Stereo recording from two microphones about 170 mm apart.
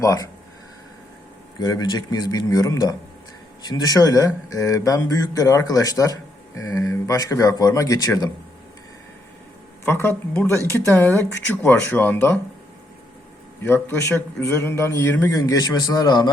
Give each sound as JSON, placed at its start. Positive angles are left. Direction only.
{"t": 0.0, "sound": "a man's voice", "side_deg": 20}
{"t": 1.5, "sound": "a man's voice", "side_deg": 20}
{"t": 9.8, "sound": "speech", "side_deg": 15}
{"t": 13.6, "sound": "a man's voice", "side_deg": 15}